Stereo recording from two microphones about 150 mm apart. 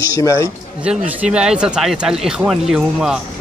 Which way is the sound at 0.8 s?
5° right (ahead or behind).